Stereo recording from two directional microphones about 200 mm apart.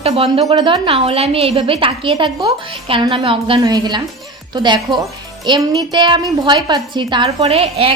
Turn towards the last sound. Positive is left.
turn(degrees=-30)  # may be behind; listen again after turning